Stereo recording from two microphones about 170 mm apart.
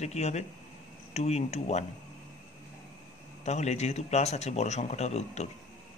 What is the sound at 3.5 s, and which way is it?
A man's voice, 40° left (ahead or behind).